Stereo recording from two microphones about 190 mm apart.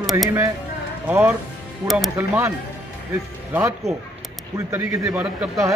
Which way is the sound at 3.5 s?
10° right (ahead or behind).